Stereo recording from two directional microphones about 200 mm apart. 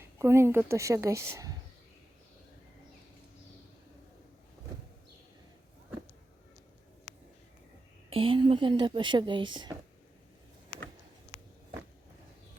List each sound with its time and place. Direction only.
0.0 s a woman's voice: 15° right (ahead or behind)
8.1 s speech: 25° right (ahead or behind)